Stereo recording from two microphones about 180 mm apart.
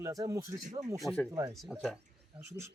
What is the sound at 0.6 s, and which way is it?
Speech, 40° right (ahead or behind).